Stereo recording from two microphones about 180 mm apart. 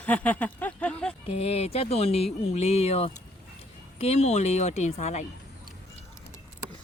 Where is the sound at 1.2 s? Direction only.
35° left (ahead or behind).